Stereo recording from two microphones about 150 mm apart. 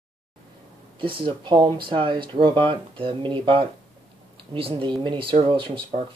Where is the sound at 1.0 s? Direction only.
35° right (ahead or behind).